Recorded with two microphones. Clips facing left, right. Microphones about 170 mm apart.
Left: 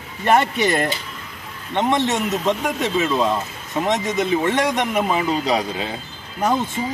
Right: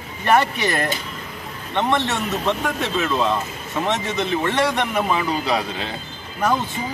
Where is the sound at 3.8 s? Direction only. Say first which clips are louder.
Left 2 dB; 15° left (ahead or behind).